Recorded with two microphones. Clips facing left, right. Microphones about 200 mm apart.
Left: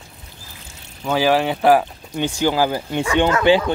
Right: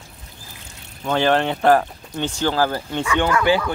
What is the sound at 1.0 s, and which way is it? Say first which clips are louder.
Speech: left 1 dB; 5° left (ahead or behind).